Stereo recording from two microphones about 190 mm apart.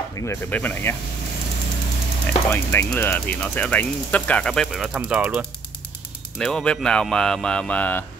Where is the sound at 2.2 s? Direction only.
10° left (ahead or behind).